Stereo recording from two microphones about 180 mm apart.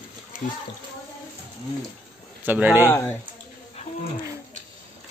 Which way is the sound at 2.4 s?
10° right (ahead or behind).